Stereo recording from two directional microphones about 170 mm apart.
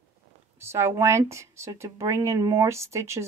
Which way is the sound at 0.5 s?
15° right (ahead or behind).